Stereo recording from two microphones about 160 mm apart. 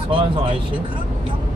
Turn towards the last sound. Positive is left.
turn(degrees=-30)  # may be behind; listen again after turning